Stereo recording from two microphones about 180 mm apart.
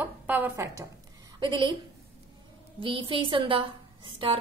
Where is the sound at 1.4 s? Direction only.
25° right (ahead or behind).